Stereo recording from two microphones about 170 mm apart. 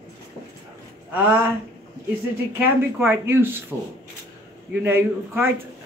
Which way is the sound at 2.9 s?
15° right (ahead or behind).